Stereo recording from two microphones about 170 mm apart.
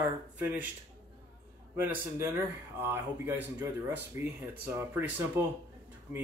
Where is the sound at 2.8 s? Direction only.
10° right (ahead or behind).